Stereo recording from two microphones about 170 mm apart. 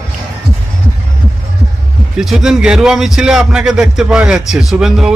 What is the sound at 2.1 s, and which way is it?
A man's voice, centre (ahead or behind).